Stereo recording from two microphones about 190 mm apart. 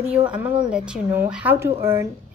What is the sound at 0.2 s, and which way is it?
A woman's voice, 5° right (ahead or behind).